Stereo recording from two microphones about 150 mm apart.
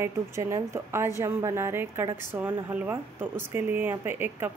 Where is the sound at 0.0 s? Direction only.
15° right (ahead or behind).